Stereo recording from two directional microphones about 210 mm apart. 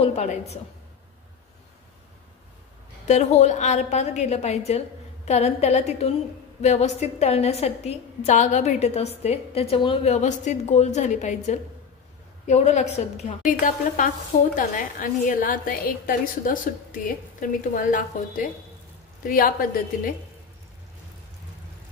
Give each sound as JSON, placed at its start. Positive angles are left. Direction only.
{"t": 0.0, "sound": "a woman's voice", "side_deg": 30}
{"t": 3.1, "sound": "a woman's voice", "side_deg": 35}